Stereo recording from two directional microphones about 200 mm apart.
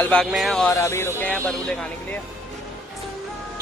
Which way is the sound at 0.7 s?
15° left (ahead or behind).